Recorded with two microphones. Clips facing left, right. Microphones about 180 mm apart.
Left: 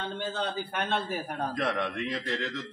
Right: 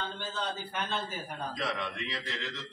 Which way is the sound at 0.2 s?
60° left (ahead or behind).